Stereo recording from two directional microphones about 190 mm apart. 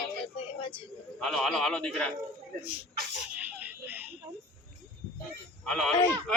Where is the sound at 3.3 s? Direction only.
10° right (ahead or behind).